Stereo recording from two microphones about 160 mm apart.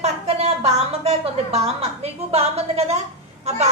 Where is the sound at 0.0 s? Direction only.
40° right (ahead or behind).